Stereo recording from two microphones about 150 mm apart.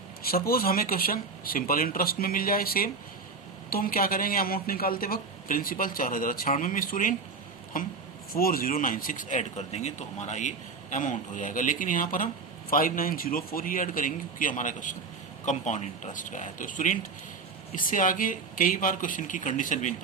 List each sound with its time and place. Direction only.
0.3 s speech: 80° left; by 7.1 s 65° left (ahead or behind)
8.3 s speech: 75° left (ahead or behind); by 19.9 s 60° left (ahead or behind)